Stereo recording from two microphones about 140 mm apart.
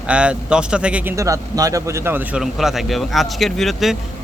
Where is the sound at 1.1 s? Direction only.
25° right (ahead or behind).